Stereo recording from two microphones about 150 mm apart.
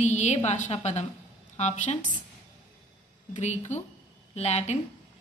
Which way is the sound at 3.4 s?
50° left (ahead or behind).